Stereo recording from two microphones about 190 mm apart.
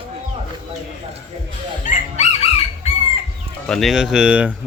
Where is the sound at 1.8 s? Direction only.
35° left (ahead or behind).